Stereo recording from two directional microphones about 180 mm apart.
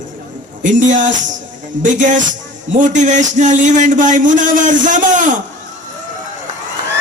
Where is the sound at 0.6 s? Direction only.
45° right (ahead or behind).